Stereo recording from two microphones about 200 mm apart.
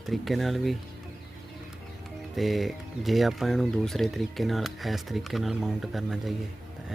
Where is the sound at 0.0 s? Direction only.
Centre (ahead or behind).